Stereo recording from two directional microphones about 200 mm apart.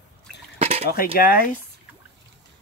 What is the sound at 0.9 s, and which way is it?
Speech, 45° left (ahead or behind).